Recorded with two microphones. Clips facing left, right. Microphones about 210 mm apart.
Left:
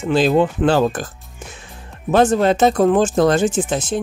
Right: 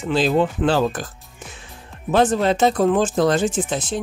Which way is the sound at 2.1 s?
50° left (ahead or behind).